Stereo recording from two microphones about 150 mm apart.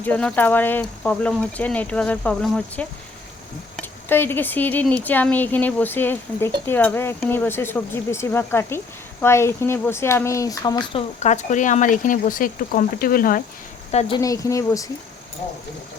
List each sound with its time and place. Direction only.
0.0 s speech: 10° left (ahead or behind)
10.9 s speech: 50° left (ahead or behind); by 13.4 s 70° left (ahead or behind)
14.2 s speech: 20° left (ahead or behind)